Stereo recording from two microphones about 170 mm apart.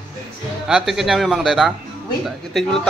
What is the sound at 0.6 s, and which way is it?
Speech, 5° right (ahead or behind).